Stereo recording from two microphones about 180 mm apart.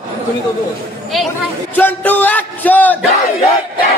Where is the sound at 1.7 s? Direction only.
10° left (ahead or behind).